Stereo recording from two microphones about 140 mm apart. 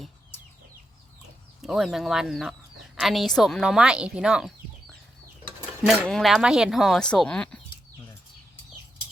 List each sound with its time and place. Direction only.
1.6 s a woman's voice: centre (ahead or behind)